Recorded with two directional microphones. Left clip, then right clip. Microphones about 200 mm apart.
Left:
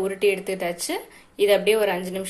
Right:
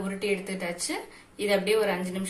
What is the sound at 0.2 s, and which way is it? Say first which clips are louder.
A woman's voice: left 6 dB; 40° left (ahead or behind).